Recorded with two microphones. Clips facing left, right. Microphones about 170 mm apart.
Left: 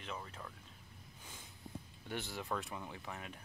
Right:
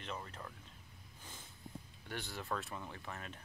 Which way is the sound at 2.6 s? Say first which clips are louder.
Left 1 dB; 10° left (ahead or behind).